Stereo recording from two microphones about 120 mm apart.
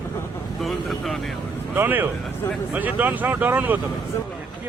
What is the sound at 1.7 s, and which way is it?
Speech, 15° right (ahead or behind).